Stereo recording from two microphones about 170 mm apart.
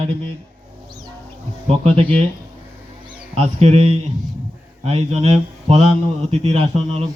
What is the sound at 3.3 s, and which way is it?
Speech, 40° right (ahead or behind).